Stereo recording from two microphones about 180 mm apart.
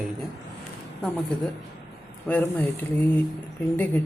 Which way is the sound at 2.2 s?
10° left (ahead or behind).